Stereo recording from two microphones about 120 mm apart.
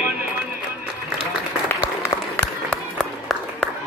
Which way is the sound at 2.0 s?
20° left (ahead or behind).